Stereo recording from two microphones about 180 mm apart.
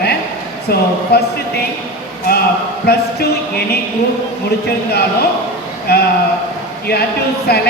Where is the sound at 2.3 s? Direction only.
55° left (ahead or behind).